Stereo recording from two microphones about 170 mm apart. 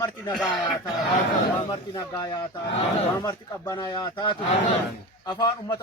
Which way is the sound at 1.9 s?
20° left (ahead or behind).